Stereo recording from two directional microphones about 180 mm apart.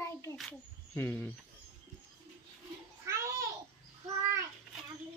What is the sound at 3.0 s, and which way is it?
Babbling, 15° right (ahead or behind).